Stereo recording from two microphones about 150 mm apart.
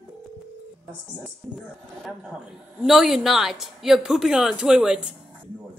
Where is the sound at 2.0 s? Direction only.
Centre (ahead or behind).